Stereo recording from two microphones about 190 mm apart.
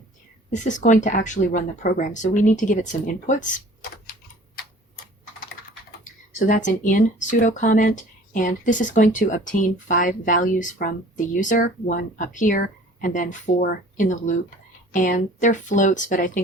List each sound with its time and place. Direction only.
0.5 s speech: 40° left (ahead or behind)
6.4 s speech: 40° left (ahead or behind)